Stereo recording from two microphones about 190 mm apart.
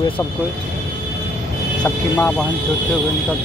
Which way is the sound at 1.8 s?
5° left (ahead or behind).